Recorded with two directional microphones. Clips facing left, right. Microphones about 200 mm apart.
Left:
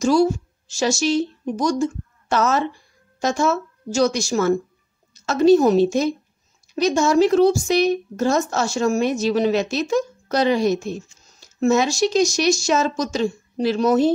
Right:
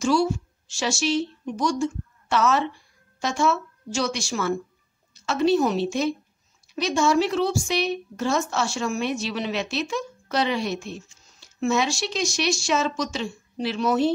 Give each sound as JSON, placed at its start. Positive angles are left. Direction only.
{"t": 0.0, "sound": "a woman's voice", "side_deg": 40}